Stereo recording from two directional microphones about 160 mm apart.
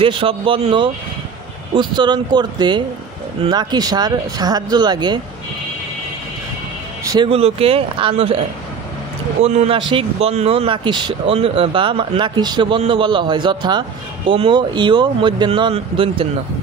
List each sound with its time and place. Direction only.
0.0 s speech: 35° right (ahead or behind)
7.2 s speech: 40° right (ahead or behind)
9.4 s speech: 40° right (ahead or behind)